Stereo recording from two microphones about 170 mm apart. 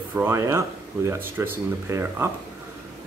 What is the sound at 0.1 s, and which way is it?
Speech, 15° right (ahead or behind).